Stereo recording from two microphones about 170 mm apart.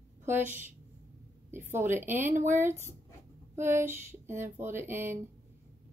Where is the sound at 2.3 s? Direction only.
45° right (ahead or behind).